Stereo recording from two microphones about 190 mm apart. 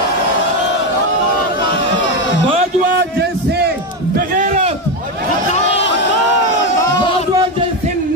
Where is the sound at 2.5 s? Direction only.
35° right (ahead or behind).